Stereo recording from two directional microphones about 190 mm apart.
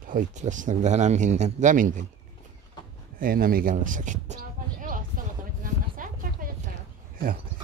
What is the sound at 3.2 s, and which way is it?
Speech, 50° right (ahead or behind).